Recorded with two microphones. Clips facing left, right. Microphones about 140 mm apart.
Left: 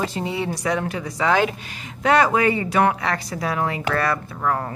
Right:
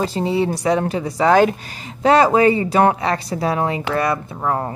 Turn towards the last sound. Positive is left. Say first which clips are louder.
# right 2 dB
turn(degrees=-25)  # may be behind; listen again after turning